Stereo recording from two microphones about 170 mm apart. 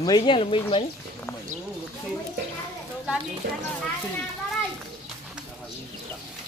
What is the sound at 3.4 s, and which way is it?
Speech, 65° right (ahead or behind).